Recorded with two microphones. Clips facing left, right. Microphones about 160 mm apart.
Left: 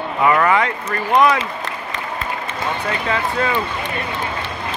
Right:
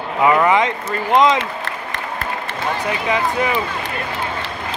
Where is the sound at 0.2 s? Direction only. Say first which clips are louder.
Right 1 dB; 20° right (ahead or behind).